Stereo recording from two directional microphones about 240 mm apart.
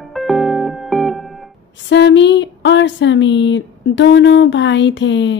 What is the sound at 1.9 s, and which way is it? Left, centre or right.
Speech, left.